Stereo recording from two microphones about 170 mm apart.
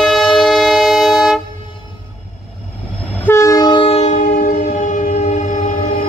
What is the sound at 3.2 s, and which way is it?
Train, 15° left (ahead or behind).